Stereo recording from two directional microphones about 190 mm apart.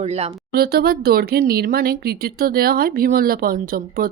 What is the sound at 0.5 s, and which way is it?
Speech, 55° right (ahead or behind).